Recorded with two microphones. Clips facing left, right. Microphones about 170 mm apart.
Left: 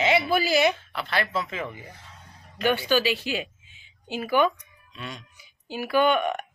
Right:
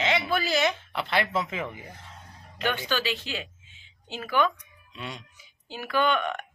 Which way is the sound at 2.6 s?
10° left (ahead or behind).